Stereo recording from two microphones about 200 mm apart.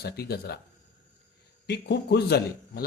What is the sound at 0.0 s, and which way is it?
Speech, 50° left (ahead or behind).